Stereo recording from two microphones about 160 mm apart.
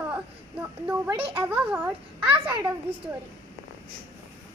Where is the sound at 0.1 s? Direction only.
10° right (ahead or behind).